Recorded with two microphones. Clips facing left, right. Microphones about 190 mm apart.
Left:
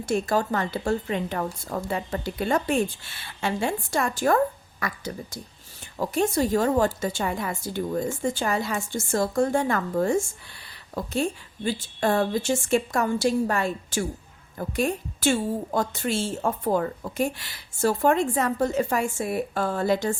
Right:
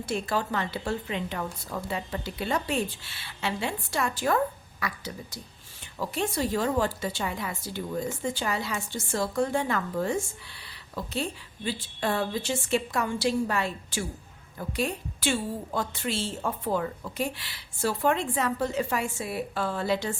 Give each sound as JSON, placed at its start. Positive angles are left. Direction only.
{"t": 0.0, "sound": "a woman's voice", "side_deg": 45}